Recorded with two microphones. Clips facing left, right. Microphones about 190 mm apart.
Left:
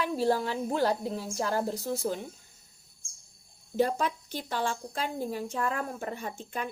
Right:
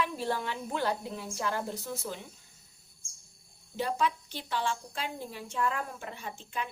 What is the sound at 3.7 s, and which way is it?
A woman's voice, 45° left (ahead or behind).